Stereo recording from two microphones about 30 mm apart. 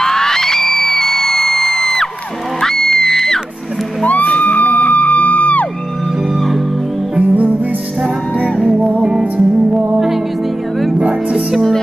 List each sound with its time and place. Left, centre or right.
0.0 s music: centre
4.0 s music: left
7.3 s music: right
8.7 s music: right
9.2 s music: right